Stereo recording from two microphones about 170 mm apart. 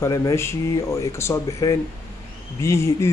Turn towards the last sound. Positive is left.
turn(degrees=15)  # may be behind; listen again after turning